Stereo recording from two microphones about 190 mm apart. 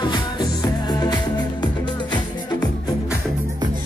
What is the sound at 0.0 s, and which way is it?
Music, 25° left (ahead or behind).